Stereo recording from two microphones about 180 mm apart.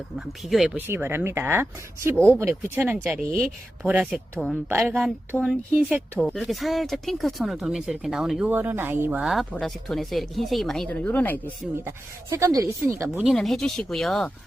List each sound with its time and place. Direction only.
0.4 s speech: centre (ahead or behind)
3.2 s speech: 50° right (ahead or behind)
3.8 s speech: 5° right (ahead or behind); by 11.3 s 10° left (ahead or behind)
11.4 s speech: 15° right (ahead or behind)
13.2 s speech: centre (ahead or behind)